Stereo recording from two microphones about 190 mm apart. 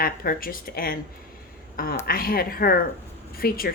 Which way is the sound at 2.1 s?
50° left (ahead or behind).